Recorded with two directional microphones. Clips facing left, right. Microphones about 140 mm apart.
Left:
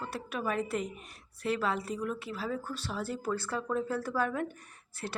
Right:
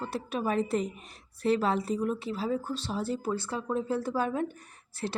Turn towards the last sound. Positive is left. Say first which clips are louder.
# right 5 dB
turn(degrees=-30)  # may be behind; listen again after turning